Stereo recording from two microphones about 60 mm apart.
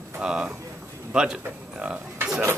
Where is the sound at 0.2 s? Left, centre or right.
Centre.